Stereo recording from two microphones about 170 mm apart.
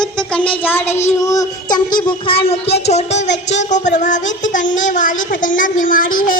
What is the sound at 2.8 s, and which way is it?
Speech, 40° left (ahead or behind).